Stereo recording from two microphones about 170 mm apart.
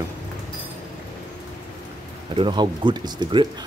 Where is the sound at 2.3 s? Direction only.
30° right (ahead or behind).